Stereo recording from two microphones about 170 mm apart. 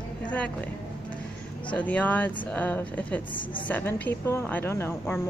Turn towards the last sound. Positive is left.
turn(degrees=15)  # may be behind; listen again after turning